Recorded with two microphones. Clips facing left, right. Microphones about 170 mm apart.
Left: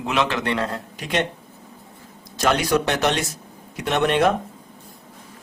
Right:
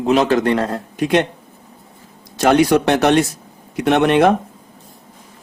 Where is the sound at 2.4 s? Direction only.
60° right (ahead or behind).